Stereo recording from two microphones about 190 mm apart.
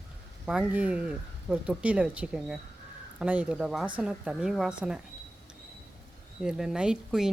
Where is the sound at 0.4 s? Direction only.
5° right (ahead or behind).